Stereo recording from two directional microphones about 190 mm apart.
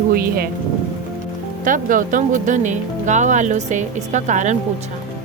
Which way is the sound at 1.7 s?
45° right (ahead or behind).